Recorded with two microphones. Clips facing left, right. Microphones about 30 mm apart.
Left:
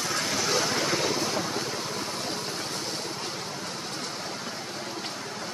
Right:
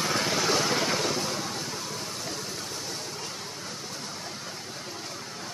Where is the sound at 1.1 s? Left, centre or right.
Left.